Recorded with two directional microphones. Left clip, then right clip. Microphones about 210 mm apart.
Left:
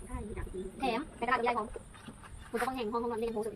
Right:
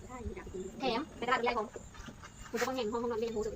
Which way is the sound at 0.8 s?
35° left (ahead or behind).